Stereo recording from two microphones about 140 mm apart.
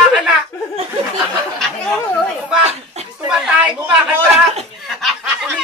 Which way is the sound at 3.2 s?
5° right (ahead or behind).